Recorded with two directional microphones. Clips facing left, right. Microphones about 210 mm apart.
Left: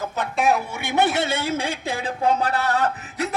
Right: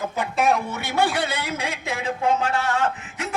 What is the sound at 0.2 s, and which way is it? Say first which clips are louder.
Speech: even; centre (ahead or behind).